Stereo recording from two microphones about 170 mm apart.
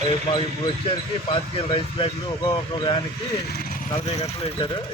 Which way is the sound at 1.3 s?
35° left (ahead or behind).